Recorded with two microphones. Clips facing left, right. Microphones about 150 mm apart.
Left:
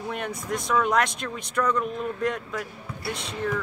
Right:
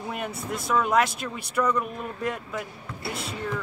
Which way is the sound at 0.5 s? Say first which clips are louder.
Left 1 dB; 5° right (ahead or behind).